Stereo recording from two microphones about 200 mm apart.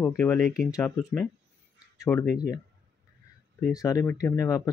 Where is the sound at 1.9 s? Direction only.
5° left (ahead or behind).